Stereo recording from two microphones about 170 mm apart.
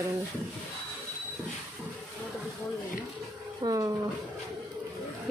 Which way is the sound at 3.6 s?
20° right (ahead or behind).